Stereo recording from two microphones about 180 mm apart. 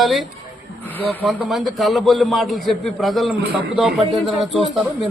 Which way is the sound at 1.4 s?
Centre (ahead or behind).